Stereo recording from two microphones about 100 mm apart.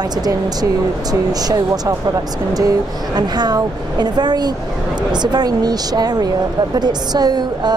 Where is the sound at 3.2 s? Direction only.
45° right (ahead or behind).